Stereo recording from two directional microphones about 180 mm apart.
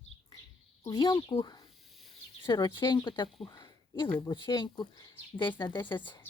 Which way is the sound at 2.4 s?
25° left (ahead or behind).